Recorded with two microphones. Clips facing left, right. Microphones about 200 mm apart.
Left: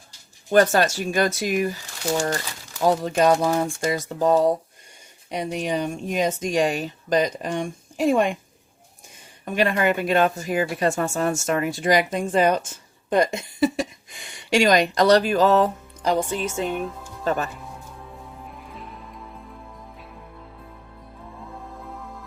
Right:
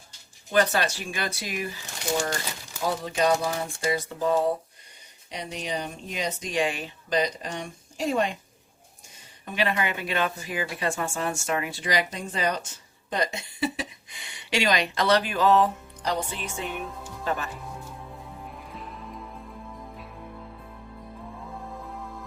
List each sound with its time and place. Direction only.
0.5 s speech: 45° left (ahead or behind)
2.9 s speech: 45° left (ahead or behind)
5.3 s speech: 50° left (ahead or behind)
9.4 s speech: 45° left (ahead or behind)
18.4 s music: centre (ahead or behind)